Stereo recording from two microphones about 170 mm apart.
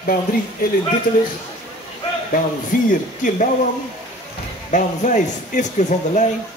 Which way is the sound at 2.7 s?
50° left (ahead or behind).